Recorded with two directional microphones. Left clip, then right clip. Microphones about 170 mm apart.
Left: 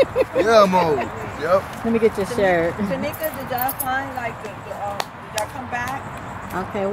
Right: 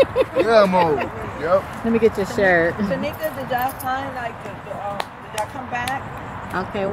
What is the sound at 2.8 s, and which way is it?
Speech, 55° right (ahead or behind).